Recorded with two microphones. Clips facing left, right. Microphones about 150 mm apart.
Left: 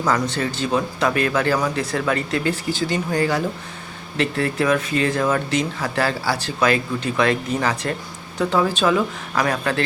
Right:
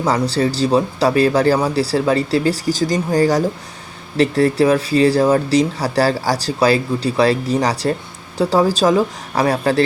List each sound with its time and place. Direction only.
0.0 s speech: 30° right (ahead or behind)